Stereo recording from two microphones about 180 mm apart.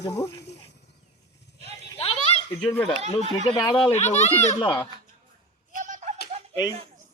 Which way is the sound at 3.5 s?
30° left (ahead or behind).